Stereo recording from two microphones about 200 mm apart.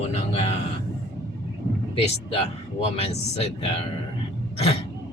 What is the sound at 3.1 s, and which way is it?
Speech, 30° left (ahead or behind).